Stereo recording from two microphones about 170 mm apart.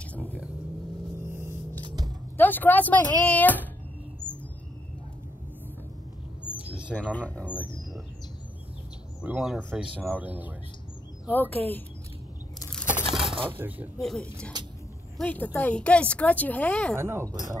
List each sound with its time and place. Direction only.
0.1 s vehicle: 10° left (ahead or behind)
1.2 s a sound: 15° right (ahead or behind)
2.3 s speech: 10° left (ahead or behind)
6.4 s a sound: 5° right (ahead or behind)
7.1 s speech: 10° left (ahead or behind)
9.2 s speech: 5° right (ahead or behind)
9.9 s speech: 10° right (ahead or behind)
11.2 s speech: 10° left (ahead or behind)
13.3 s a sound: 30° right (ahead or behind)
13.6 s speech: 10° right (ahead or behind)
13.9 s speech: 5° left (ahead or behind)
16.9 s speech: 15° right (ahead or behind)